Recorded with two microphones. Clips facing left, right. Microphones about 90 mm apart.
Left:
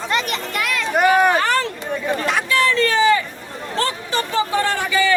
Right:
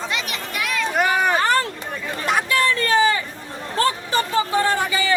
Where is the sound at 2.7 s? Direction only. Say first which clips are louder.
Left 3 dB; 40° right (ahead or behind).